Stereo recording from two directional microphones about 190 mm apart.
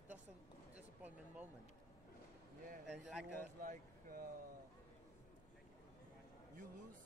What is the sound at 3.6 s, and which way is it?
Speech, 50° right (ahead or behind).